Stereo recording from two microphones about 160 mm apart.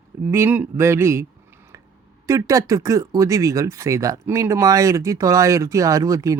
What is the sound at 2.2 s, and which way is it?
Speech, 20° right (ahead or behind).